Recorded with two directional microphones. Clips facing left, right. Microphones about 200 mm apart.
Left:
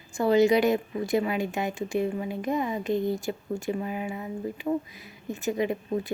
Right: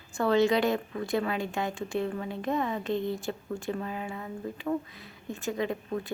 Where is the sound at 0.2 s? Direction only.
20° left (ahead or behind).